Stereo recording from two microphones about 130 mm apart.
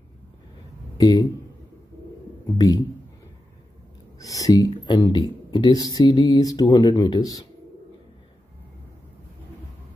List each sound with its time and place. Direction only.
0.9 s speech: 30° left (ahead or behind)
2.5 s a man's voice: 30° left (ahead or behind)
4.2 s speech: 25° left (ahead or behind)